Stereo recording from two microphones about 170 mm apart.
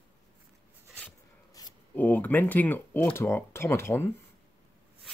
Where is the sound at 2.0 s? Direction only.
10° left (ahead or behind).